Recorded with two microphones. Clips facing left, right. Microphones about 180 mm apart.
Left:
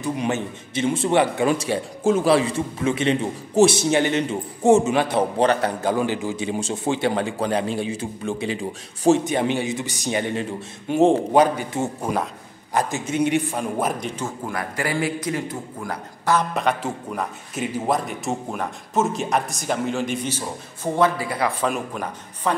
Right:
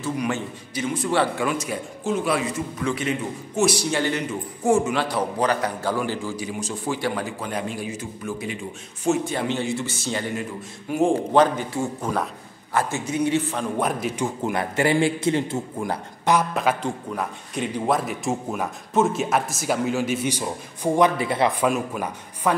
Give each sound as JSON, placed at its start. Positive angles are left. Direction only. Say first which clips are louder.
{"t": 0.0, "sound": "a man's voice", "louder": "left 2 dB", "side_deg": 20}
{"t": 9.2, "sound": "a man's voice", "louder": "left 3 dB", "side_deg": 20}
{"t": 10.3, "sound": "a man's voice", "louder": "left 3 dB", "side_deg": 25}
{"t": 14.2, "sound": "a man's voice", "louder": "right 3 dB", "side_deg": -25}
{"t": 16.5, "sound": "a man's voice", "louder": "even", "side_deg": 5}
{"t": 21.5, "sound": "a man's voice", "louder": "right 2 dB", "side_deg": -5}